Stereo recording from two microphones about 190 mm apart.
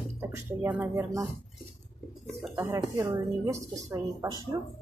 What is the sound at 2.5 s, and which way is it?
A woman's voice, 15° right (ahead or behind).